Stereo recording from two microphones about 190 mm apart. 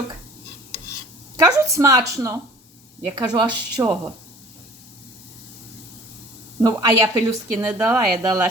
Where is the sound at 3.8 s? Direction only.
15° right (ahead or behind).